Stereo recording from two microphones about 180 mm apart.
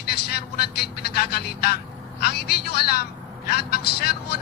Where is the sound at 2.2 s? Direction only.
60° left (ahead or behind).